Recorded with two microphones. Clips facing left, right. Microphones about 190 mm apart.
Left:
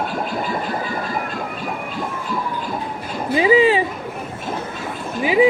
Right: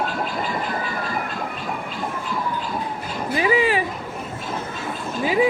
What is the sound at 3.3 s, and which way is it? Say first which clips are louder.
Speech: left 6 dB; 20° left (ahead or behind).